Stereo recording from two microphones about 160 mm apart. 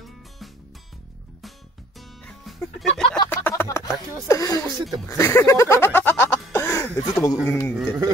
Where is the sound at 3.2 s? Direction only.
15° left (ahead or behind).